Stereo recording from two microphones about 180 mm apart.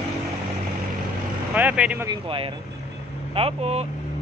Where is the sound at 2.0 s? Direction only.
30° right (ahead or behind).